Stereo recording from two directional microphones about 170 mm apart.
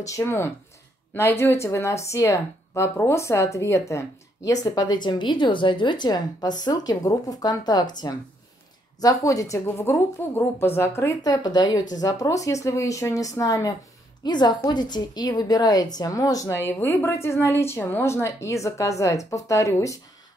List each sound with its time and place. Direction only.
0.0 s speech: 15° left (ahead or behind)